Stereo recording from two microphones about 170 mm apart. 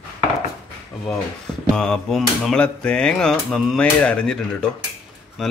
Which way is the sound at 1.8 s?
5° left (ahead or behind).